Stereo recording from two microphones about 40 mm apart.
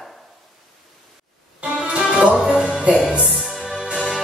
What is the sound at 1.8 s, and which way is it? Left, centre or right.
Music, centre.